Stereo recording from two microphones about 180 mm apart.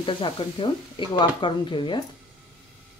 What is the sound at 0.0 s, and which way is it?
Speech, 30° left (ahead or behind).